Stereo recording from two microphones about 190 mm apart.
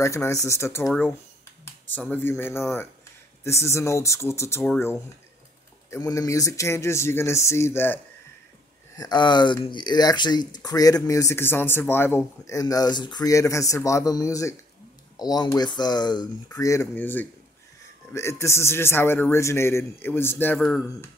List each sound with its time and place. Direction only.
0.0 s a man's voice: 15° left (ahead or behind)
5.9 s a man's voice: 15° left (ahead or behind)